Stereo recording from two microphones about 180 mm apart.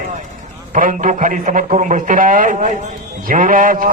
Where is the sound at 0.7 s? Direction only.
50° right (ahead or behind).